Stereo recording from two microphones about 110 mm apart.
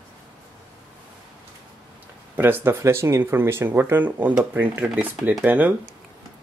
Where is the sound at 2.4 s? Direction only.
20° right (ahead or behind).